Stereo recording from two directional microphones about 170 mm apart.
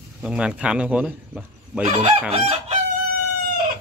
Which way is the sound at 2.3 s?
35° right (ahead or behind).